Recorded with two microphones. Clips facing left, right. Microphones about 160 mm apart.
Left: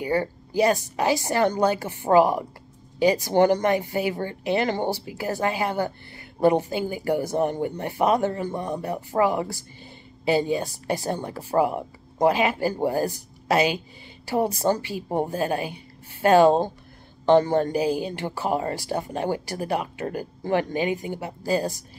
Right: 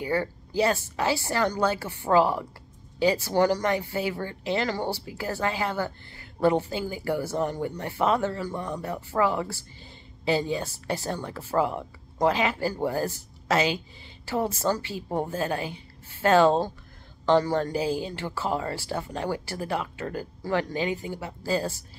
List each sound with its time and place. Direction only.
0.0 s a woman's voice: 15° left (ahead or behind)